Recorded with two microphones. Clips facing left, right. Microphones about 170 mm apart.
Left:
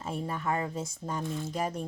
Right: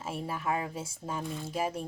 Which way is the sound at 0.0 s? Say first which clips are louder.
Left 1 dB; 5° right (ahead or behind).